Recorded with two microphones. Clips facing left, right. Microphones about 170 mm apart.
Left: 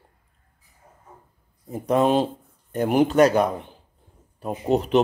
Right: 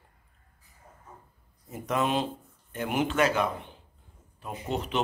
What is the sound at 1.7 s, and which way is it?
Speech, 35° left (ahead or behind).